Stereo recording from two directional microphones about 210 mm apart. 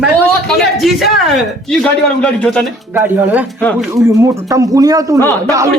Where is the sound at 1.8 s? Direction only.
5° left (ahead or behind).